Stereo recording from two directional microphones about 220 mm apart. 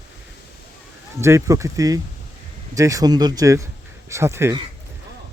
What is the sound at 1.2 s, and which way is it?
Speech, 15° right (ahead or behind).